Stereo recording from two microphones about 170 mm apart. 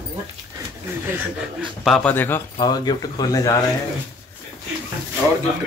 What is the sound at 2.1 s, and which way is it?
Speech, 10° left (ahead or behind).